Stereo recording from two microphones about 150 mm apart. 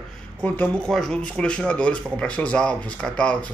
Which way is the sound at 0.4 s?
10° left (ahead or behind).